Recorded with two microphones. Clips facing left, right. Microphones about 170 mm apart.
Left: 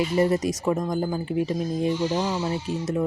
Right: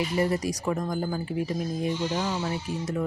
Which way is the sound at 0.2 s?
25° left (ahead or behind).